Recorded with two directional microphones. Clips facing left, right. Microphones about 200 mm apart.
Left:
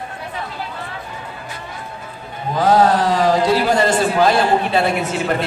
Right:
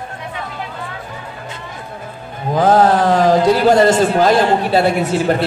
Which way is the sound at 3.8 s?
40° right (ahead or behind).